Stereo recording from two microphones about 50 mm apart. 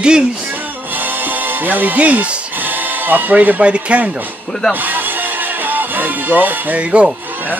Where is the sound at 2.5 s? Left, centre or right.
Right.